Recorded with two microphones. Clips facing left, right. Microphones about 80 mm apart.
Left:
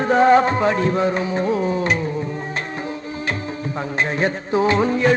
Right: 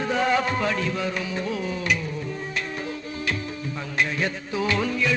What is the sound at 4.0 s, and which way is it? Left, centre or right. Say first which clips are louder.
A man's voice: left 4 dB; left.